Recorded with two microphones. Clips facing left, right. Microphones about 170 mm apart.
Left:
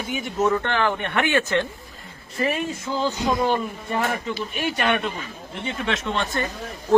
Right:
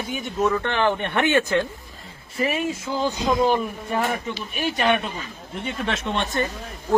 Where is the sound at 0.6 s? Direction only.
25° right (ahead or behind).